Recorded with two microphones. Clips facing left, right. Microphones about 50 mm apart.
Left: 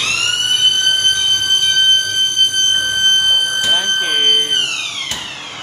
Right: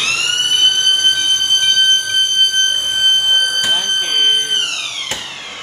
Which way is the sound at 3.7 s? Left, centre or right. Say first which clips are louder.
Left 1 dB; centre.